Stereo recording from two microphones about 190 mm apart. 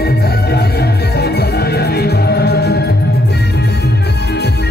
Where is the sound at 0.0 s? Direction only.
60° left (ahead or behind).